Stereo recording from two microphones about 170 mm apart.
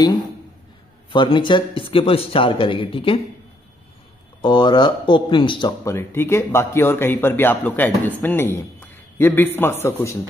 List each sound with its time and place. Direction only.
1.1 s a man's voice: 30° left (ahead or behind)
4.4 s speech: 25° left (ahead or behind)
5.9 s a man's voice: 15° left (ahead or behind)